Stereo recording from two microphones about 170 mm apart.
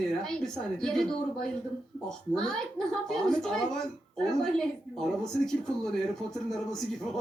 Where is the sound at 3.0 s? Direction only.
5° left (ahead or behind).